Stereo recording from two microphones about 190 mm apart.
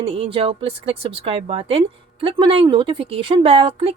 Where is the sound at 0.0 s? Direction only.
30° right (ahead or behind).